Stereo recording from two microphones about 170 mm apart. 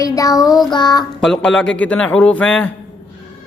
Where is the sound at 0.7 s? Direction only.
25° left (ahead or behind).